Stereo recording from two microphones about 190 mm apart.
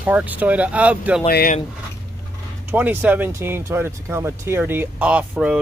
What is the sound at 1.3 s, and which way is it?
Speech, 50° left (ahead or behind).